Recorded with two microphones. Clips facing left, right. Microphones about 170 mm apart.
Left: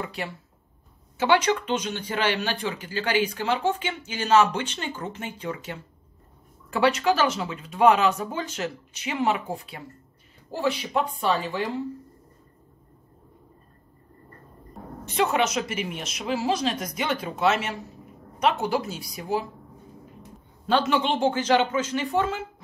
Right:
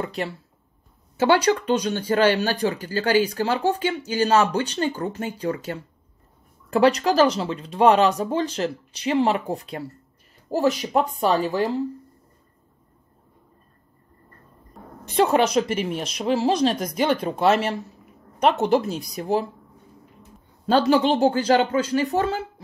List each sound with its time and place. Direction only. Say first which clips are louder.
0.0 s speech: right 5 dB; 40° right (ahead or behind)
6.8 s speech: right 4 dB; 35° right (ahead or behind)
15.1 s speech: right 5 dB; 35° right (ahead or behind)
16.9 s speech: right 6 dB; centre (ahead or behind)
17.4 s speech: right 3 dB; 35° right (ahead or behind)
20.6 s speech: right 5 dB; 35° right (ahead or behind)